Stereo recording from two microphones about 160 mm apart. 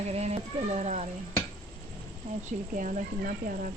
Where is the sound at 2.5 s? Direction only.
55° right (ahead or behind).